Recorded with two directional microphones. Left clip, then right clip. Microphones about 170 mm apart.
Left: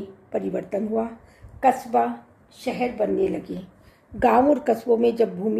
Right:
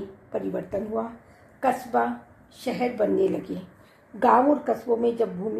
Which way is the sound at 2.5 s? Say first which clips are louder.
Left 1 dB; centre (ahead or behind).